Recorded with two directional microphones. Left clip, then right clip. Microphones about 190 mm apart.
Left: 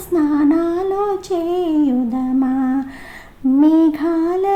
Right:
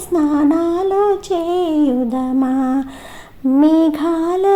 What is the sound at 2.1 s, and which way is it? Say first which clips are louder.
Lullaby: right 1 dB; 30° right (ahead or behind).